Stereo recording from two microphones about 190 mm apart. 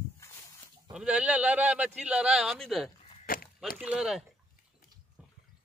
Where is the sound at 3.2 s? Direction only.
50° left (ahead or behind).